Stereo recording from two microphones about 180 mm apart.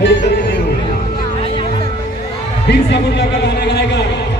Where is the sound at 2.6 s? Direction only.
70° left (ahead or behind).